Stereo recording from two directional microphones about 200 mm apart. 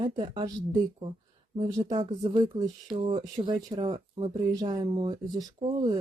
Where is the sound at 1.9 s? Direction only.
35° right (ahead or behind).